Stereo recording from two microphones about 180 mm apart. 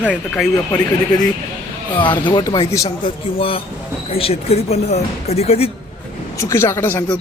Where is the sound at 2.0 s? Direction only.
25° left (ahead or behind).